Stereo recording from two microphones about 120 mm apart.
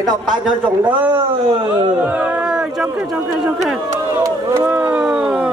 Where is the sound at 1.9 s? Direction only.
10° right (ahead or behind).